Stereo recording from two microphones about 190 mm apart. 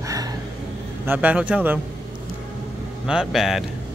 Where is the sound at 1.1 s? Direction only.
10° right (ahead or behind).